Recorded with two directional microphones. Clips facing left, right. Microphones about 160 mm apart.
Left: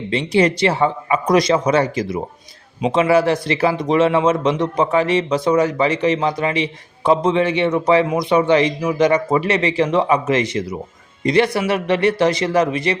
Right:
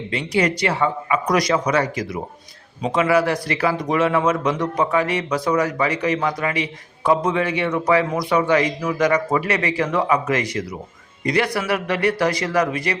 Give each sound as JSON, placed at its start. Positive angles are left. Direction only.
{"t": 0.1, "sound": "speech", "side_deg": 25}